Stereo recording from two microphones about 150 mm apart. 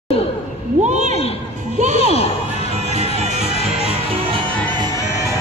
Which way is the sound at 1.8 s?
50° right (ahead or behind).